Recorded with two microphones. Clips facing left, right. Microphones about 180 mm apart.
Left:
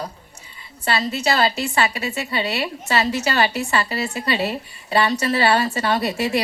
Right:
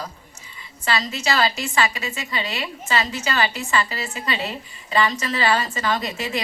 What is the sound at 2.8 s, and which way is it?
A woman's voice, 70° left (ahead or behind).